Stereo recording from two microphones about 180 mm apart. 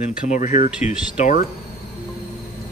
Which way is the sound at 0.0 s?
45° left (ahead or behind).